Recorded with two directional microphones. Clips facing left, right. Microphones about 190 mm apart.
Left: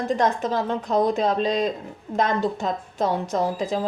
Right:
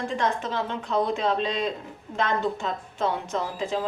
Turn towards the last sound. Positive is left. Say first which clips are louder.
# left 4 dB
turn(degrees=40)  # may be behind; listen again after turning